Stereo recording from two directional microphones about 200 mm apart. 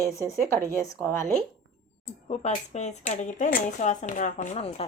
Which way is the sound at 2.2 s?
35° left (ahead or behind).